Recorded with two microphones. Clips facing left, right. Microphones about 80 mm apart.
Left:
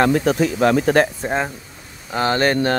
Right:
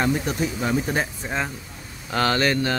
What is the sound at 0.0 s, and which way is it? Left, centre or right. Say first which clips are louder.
Speech: left 7 dB; left.